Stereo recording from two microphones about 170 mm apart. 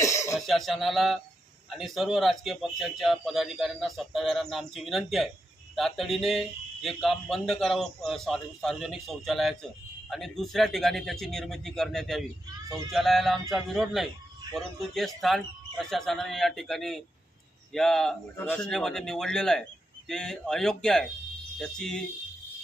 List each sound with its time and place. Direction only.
0.0 s cough: 20° left (ahead or behind)
0.5 s a man's voice: centre (ahead or behind)